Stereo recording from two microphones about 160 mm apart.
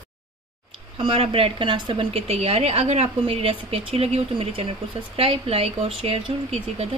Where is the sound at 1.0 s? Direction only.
35° right (ahead or behind).